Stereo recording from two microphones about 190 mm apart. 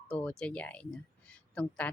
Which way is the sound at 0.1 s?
5° left (ahead or behind).